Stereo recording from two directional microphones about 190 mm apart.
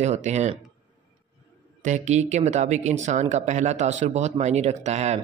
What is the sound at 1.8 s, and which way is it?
Speech, 40° right (ahead or behind).